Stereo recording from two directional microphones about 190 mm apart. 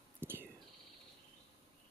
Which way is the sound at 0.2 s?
10° right (ahead or behind).